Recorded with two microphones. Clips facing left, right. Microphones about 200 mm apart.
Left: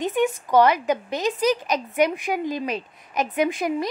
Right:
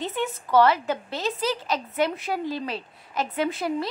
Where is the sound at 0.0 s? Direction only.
15° left (ahead or behind).